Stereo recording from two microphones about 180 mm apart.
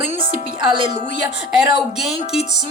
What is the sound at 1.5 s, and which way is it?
Speech, 5° right (ahead or behind).